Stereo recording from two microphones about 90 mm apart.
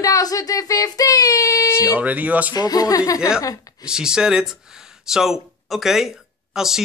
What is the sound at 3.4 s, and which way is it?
Speech, 45° left (ahead or behind).